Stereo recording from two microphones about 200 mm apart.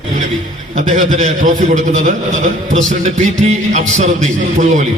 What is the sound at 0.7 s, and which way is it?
A man's voice, 40° right (ahead or behind).